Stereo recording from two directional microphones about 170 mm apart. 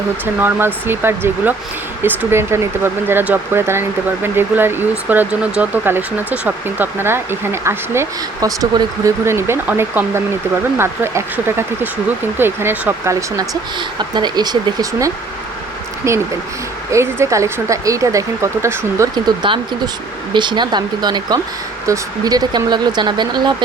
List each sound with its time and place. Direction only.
0.3 s speech: 10° right (ahead or behind)